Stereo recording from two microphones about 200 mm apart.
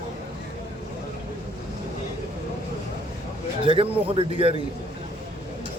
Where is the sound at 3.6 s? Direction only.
25° right (ahead or behind).